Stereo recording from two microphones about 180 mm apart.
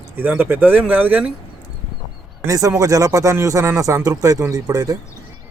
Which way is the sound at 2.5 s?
20° right (ahead or behind).